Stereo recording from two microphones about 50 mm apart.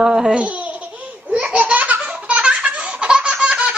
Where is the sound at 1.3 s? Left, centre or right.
Right.